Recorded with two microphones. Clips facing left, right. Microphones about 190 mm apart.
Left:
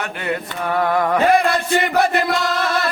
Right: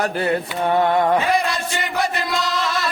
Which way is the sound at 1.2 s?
55° left (ahead or behind).